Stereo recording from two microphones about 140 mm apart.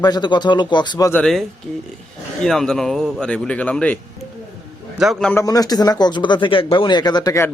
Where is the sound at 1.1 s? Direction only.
5° left (ahead or behind).